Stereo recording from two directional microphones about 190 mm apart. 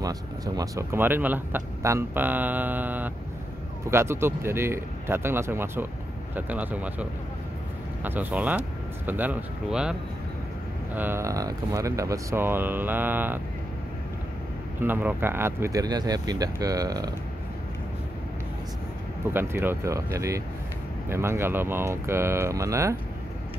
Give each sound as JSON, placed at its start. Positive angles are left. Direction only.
{"t": 0.0, "sound": "speech", "side_deg": -20}
{"t": 11.0, "sound": "speech", "side_deg": -10}
{"t": 14.8, "sound": "speech", "side_deg": -10}
{"t": 19.3, "sound": "speech", "side_deg": -10}